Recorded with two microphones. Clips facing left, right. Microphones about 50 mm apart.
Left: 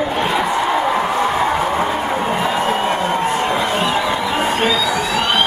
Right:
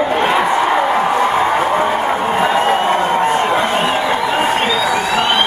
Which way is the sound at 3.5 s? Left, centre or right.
Right.